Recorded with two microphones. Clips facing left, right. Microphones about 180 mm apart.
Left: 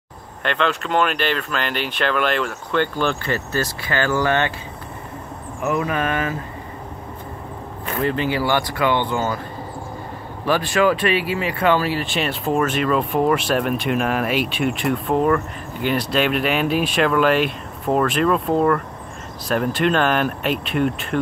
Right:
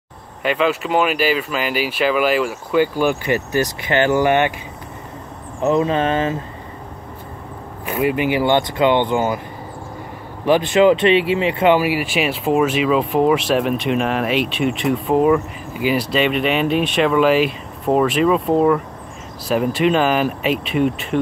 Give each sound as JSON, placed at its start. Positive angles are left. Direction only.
{"t": 0.4, "sound": "speech", "side_deg": -5}
{"t": 5.6, "sound": "speech", "side_deg": -25}
{"t": 7.8, "sound": "speech", "side_deg": -10}
{"t": 10.4, "sound": "speech", "side_deg": -20}